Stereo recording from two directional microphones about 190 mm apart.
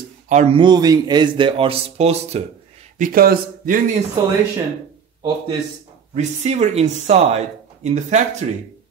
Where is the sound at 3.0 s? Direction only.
50° right (ahead or behind).